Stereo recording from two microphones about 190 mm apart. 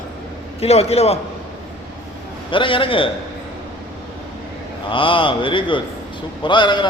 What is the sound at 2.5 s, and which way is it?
Speech, 25° left (ahead or behind).